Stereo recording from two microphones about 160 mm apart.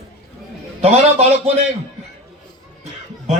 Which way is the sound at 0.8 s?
40° right (ahead or behind).